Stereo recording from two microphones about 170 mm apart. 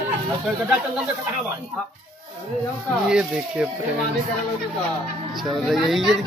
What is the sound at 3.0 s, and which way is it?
Speech, 5° right (ahead or behind).